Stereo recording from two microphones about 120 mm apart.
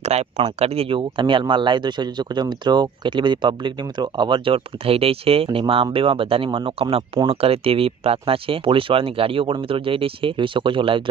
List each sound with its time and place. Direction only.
0.0 s speech: 60° right (ahead or behind); by 11.0 s 45° right (ahead or behind)